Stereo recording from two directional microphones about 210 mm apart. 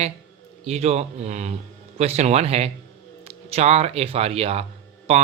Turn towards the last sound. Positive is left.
turn(degrees=-25)  # may be behind; listen again after turning